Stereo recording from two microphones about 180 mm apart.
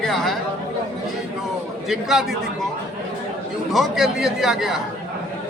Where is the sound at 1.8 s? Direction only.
Centre (ahead or behind).